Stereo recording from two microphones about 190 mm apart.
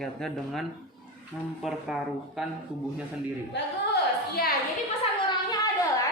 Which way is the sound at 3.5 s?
60° left (ahead or behind).